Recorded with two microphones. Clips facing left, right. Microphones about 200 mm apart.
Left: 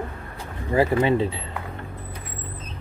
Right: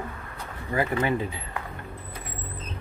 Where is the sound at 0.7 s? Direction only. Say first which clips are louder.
Left 6 dB; 25° left (ahead or behind).